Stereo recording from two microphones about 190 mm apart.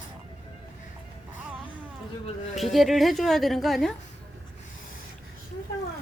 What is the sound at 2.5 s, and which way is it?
A woman's voice, centre (ahead or behind).